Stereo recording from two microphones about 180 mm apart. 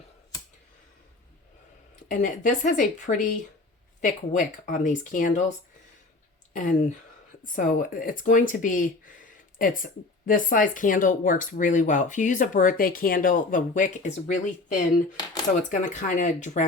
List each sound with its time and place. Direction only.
2.0 s speech: 45° left (ahead or behind)
6.5 s speech: 45° left (ahead or behind)
15.1 s speech: 20° left (ahead or behind)
15.7 s speech: 45° left (ahead or behind)